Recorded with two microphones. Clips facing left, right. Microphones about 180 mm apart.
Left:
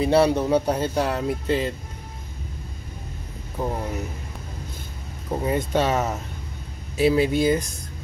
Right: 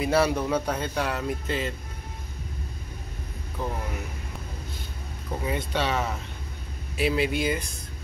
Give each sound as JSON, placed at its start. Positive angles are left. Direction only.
{"t": 0.0, "sound": "speech", "side_deg": 30}
{"t": 3.6, "sound": "speech", "side_deg": 40}
{"t": 5.4, "sound": "speech", "side_deg": 40}